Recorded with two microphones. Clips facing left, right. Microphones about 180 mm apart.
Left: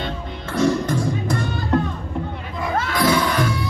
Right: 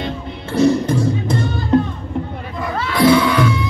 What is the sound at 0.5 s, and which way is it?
Music, 25° right (ahead or behind).